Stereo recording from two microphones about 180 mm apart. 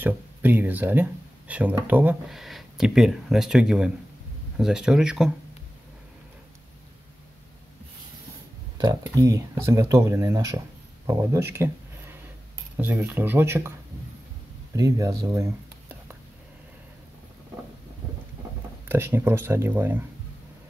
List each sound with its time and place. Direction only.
0.0 s speech: 10° right (ahead or behind)
8.7 s speech: 20° right (ahead or behind)
14.8 s speech: 20° right (ahead or behind)
18.9 s speech: 15° right (ahead or behind)